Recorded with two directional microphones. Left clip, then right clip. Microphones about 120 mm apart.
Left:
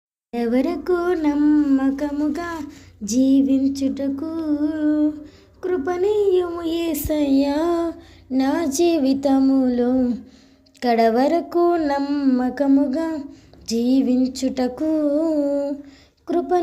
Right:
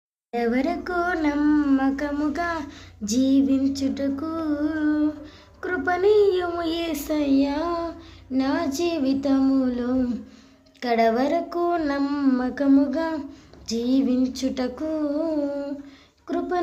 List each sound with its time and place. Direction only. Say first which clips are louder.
0.3 s speech: left 2 dB; 30° left (ahead or behind)
1.5 s child singing: left 3 dB; 10° left (ahead or behind)
2.3 s speech: right 1 dB; 20° left (ahead or behind)
6.2 s child singing: left 3 dB; 15° left (ahead or behind)
6.7 s a sound: left 3 dB; 25° left (ahead or behind); by 9.4 s 45° left (ahead or behind)
9.4 s speech: left 3 dB; 25° left (ahead or behind)
9.6 s speech: left 6 dB; 40° left (ahead or behind)
10.8 s a sound: left 4 dB; 45° left (ahead or behind)
11.9 s speech: left 3 dB; 25° left (ahead or behind)
12.4 s speech: left 4 dB; 40° left (ahead or behind)
12.6 s speech: even; 25° left (ahead or behind)
13.7 s speech: left 4 dB; 40° left (ahead or behind)
16.2 s speech: left 6 dB; 45° left (ahead or behind)